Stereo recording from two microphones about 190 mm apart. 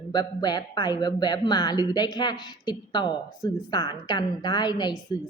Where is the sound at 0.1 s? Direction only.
20° left (ahead or behind).